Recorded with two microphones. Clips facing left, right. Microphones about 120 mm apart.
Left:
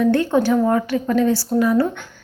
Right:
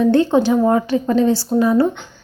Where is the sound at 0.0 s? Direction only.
30° right (ahead or behind).